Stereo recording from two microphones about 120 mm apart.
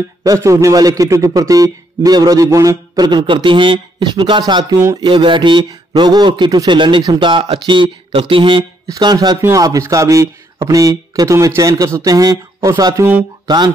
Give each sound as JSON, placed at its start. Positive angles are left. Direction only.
{"t": 0.2, "sound": "a man's voice", "side_deg": -25}
{"t": 8.8, "sound": "a man's voice", "side_deg": -30}